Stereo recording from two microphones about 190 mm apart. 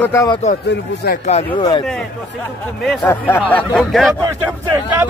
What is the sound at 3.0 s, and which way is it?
Speech, 10° left (ahead or behind).